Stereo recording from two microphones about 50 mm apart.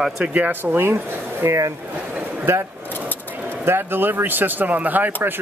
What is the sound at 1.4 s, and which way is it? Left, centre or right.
Speech, right.